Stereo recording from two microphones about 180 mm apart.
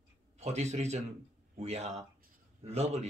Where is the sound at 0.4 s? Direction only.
40° right (ahead or behind).